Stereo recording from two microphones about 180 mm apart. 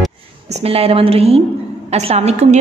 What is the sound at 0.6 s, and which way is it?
A woman's voice, 35° right (ahead or behind).